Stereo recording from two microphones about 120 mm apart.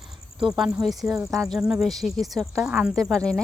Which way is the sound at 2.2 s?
30° right (ahead or behind).